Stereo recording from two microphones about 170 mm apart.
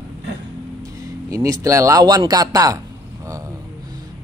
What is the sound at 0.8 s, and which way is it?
Music, 20° right (ahead or behind).